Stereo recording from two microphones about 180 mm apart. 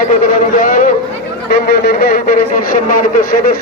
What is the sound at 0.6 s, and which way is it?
A man's voice, 50° left (ahead or behind).